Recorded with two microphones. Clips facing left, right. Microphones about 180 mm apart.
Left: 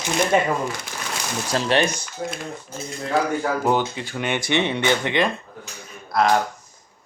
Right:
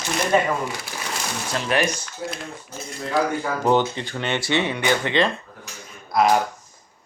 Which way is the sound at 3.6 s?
10° left (ahead or behind).